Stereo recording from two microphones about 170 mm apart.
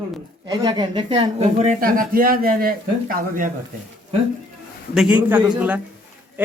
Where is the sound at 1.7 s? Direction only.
55° right (ahead or behind).